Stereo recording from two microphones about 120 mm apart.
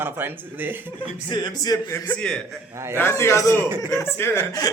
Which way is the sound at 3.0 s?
20° left (ahead or behind).